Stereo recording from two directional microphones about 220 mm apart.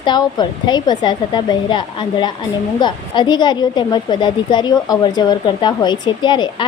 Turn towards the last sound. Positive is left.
turn(degrees=20)  # may be behind; listen again after turning